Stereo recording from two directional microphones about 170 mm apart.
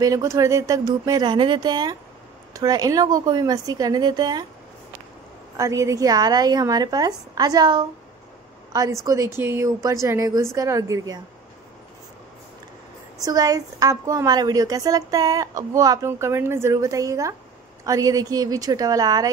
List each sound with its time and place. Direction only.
0.0 s a woman's voice: 20° right (ahead or behind)
5.6 s a woman's voice: 20° right (ahead or behind)
9.0 s a woman's voice: 20° right (ahead or behind)
13.2 s a woman's voice: 20° right (ahead or behind)